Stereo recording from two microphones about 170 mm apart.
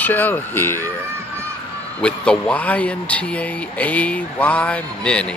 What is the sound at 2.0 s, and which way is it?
Speech, 5° left (ahead or behind).